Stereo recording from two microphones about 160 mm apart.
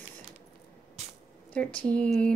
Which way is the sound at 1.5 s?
10° left (ahead or behind).